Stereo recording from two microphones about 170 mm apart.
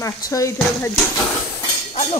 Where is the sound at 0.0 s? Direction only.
20° left (ahead or behind).